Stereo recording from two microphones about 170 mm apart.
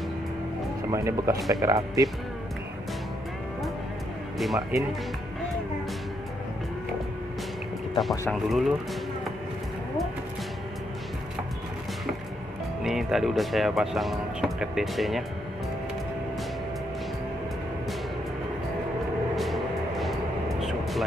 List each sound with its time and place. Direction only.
0.8 s speech: 15° right (ahead or behind)
4.4 s speech: centre (ahead or behind)
7.9 s speech: centre (ahead or behind)
12.8 s speech: centre (ahead or behind)
19.3 s vehicle: centre (ahead or behind)